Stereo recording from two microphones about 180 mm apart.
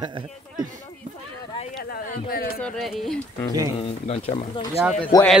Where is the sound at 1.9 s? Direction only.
55° left (ahead or behind).